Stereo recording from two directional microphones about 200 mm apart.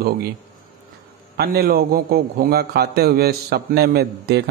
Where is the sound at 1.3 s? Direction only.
50° right (ahead or behind).